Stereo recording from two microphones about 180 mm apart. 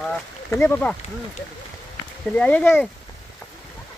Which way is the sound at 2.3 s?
5° left (ahead or behind).